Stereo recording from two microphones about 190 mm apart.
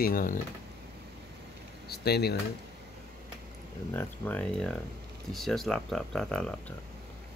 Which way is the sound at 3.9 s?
10° left (ahead or behind).